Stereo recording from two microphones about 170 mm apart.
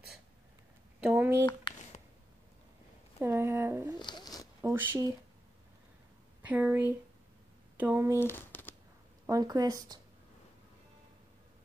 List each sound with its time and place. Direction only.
1.0 s speech: 10° right (ahead or behind)
1.7 s a sound: 25° left (ahead or behind)
3.2 s speech: 15° right (ahead or behind)
6.4 s speech: 10° right (ahead or behind)
8.2 s a sound: 15° left (ahead or behind)
9.2 s speech: 20° right (ahead or behind)